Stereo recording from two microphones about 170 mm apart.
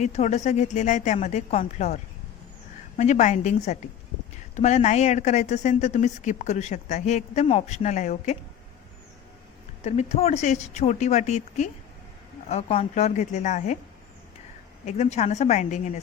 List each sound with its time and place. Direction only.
0.0 s speech: 40° left (ahead or behind)
3.0 s speech: 45° left (ahead or behind)
9.8 s speech: 40° left (ahead or behind)
14.8 s speech: 40° left (ahead or behind)